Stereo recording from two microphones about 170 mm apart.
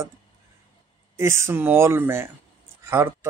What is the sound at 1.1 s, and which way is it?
Speech, 15° right (ahead or behind).